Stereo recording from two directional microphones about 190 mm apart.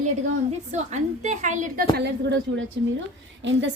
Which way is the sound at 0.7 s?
35° right (ahead or behind).